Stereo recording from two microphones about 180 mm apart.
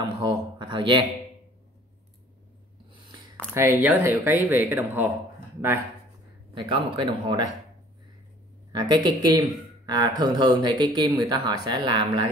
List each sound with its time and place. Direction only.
0.0 s speech: 25° right (ahead or behind)
3.5 s speech: 10° right (ahead or behind)
6.5 s speech: 25° right (ahead or behind)
8.7 s speech: 25° right (ahead or behind)